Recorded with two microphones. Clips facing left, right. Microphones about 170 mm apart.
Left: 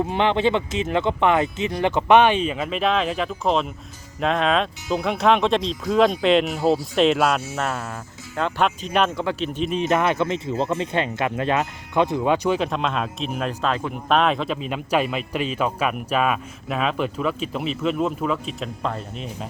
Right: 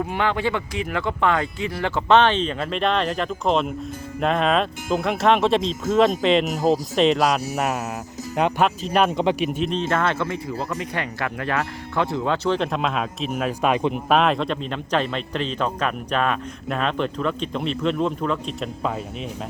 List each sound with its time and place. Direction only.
0.0 s a man's voice: 20° left (ahead or behind); by 6.4 s centre (ahead or behind)
6.4 s speech: 40° right (ahead or behind)
6.9 s a man's voice: centre (ahead or behind)
7.5 s a man's voice: 15° right (ahead or behind)
8.6 s a man's voice: centre (ahead or behind)
9.0 s a man's voice: 15° right (ahead or behind)
9.9 s speech: 15° left (ahead or behind); by 14.0 s 20° right (ahead or behind)
14.1 s a man's voice: centre (ahead or behind)